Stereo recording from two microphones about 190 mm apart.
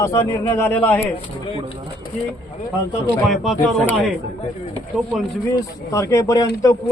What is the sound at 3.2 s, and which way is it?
Speech, centre (ahead or behind).